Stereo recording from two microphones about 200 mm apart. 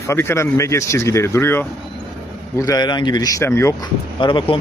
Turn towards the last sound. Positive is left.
turn(degrees=25)  # may be behind; listen again after turning